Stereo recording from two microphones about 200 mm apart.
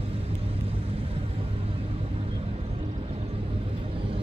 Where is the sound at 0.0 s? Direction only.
30° right (ahead or behind).